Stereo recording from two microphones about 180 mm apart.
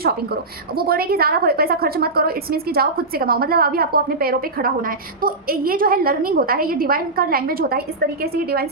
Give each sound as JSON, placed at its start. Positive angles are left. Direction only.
{"t": 0.8, "sound": "a woman's voice", "side_deg": -55}